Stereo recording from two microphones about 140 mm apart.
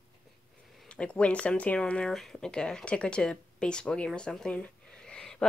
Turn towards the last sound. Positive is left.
turn(degrees=5)  # may be behind; listen again after turning